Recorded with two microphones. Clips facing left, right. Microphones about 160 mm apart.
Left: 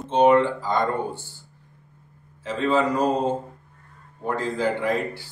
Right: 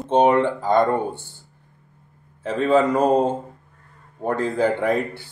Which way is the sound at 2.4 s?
55° right (ahead or behind).